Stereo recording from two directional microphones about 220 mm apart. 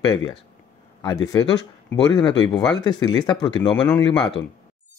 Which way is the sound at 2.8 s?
20° left (ahead or behind).